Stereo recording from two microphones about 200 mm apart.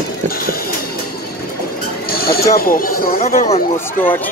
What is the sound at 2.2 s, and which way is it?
Speech, 50° left (ahead or behind).